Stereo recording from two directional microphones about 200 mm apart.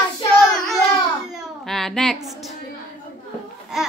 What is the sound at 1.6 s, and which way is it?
Child singing, centre (ahead or behind).